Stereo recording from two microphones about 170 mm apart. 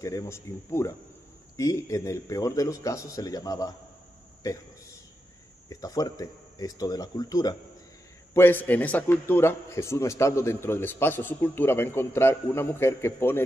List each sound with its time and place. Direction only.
0.0 s a man's voice: 20° left (ahead or behind)
5.7 s a man's voice: 20° left (ahead or behind)